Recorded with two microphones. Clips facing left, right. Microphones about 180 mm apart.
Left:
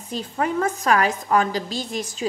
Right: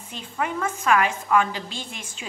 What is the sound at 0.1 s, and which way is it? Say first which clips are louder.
A woman's voice: left 5 dB; 35° left (ahead or behind).